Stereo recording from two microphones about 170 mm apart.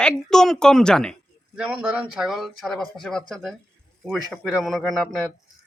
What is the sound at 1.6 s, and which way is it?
Speech, 5° right (ahead or behind).